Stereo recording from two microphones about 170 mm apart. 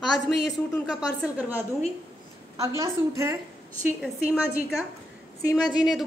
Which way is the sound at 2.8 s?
15° right (ahead or behind).